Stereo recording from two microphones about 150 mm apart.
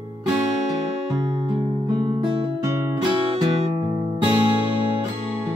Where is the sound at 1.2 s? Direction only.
30° right (ahead or behind).